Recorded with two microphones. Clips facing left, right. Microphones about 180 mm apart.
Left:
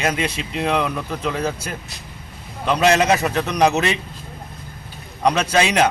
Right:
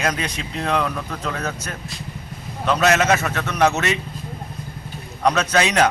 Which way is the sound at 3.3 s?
30° left (ahead or behind).